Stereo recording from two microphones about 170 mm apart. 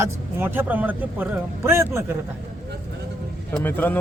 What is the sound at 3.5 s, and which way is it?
Speech, 10° left (ahead or behind).